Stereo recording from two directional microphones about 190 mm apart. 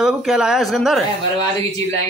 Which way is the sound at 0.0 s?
5° right (ahead or behind).